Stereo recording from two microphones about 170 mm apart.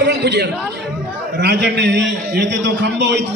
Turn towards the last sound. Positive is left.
turn(degrees=-90)